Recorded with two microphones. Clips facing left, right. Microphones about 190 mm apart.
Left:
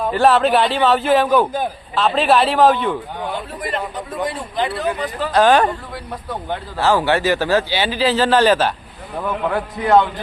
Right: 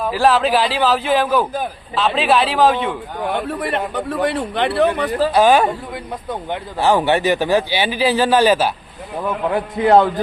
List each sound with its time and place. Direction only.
0.1 s speech: centre (ahead or behind)
3.3 s a man's voice: 65° right (ahead or behind)
5.3 s speech: 10° right (ahead or behind)
9.5 s a man's voice: 30° right (ahead or behind)